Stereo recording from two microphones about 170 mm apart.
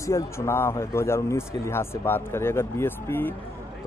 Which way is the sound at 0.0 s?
15° left (ahead or behind).